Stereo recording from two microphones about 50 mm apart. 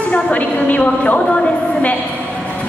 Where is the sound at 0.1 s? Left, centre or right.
Left.